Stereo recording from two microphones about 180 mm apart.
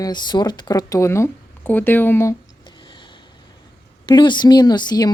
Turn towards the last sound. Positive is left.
turn(degrees=20)  # may be behind; listen again after turning